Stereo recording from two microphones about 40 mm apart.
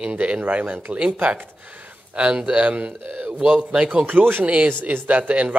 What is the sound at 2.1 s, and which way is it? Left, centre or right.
Speech, right.